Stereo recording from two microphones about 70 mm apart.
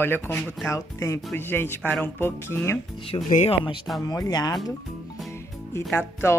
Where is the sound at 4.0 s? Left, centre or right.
Left.